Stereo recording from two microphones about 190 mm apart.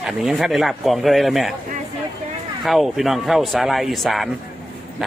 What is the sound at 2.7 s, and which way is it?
Speech, centre (ahead or behind).